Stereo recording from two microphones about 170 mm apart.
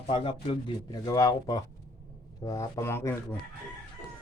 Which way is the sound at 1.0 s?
20° left (ahead or behind).